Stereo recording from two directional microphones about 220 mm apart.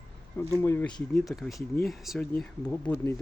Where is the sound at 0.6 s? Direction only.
10° left (ahead or behind).